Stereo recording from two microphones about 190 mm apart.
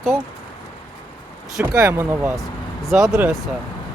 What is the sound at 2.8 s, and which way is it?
Speech, centre (ahead or behind).